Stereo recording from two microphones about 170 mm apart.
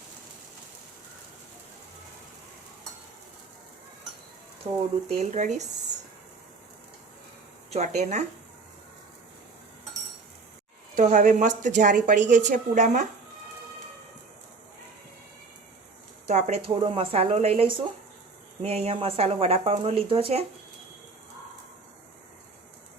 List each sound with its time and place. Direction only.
4.7 s speech: 25° right (ahead or behind)
5.0 s speech: 40° right (ahead or behind)
7.7 s speech: 40° right (ahead or behind)
10.9 s speech: 50° right (ahead or behind)
16.2 s speech: 35° right (ahead or behind)